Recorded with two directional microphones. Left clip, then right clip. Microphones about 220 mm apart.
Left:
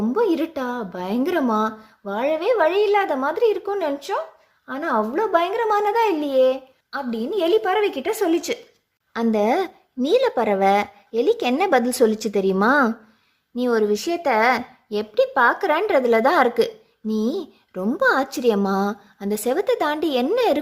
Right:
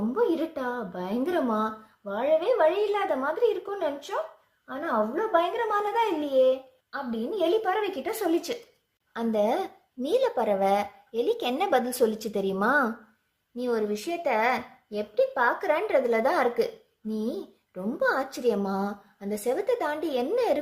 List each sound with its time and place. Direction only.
0.1 s speech: 45° left (ahead or behind)